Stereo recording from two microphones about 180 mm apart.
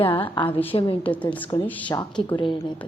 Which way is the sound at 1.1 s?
10° left (ahead or behind).